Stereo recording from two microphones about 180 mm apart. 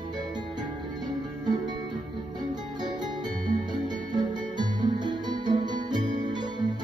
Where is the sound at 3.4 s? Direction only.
25° right (ahead or behind).